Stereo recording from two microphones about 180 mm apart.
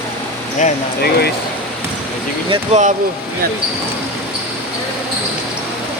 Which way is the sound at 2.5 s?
40° right (ahead or behind).